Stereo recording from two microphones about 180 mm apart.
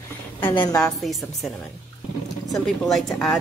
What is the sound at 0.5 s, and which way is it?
Speech, 20° left (ahead or behind).